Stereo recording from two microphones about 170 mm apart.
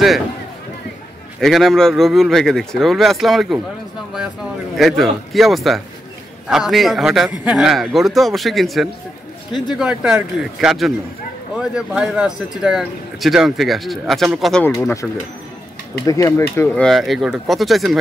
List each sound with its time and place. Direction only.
1.4 s speech: centre (ahead or behind)
4.7 s speech: centre (ahead or behind)
14.8 s speech: 15° left (ahead or behind)
16.1 s speech: 15° left (ahead or behind); by 17.9 s centre (ahead or behind)